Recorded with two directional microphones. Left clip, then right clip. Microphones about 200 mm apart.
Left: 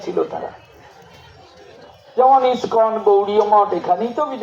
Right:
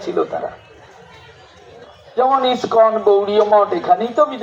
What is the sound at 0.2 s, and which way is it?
Speech, 25° right (ahead or behind).